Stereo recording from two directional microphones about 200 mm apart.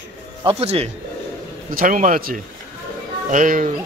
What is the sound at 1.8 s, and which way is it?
A man's voice, 40° right (ahead or behind).